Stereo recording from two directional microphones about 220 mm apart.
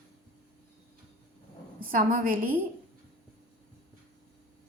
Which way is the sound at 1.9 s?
40° right (ahead or behind).